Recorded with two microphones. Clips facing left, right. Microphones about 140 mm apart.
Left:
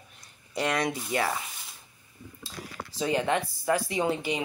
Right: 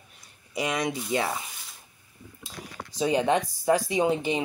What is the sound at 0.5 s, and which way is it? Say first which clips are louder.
Speech: even; 10° right (ahead or behind).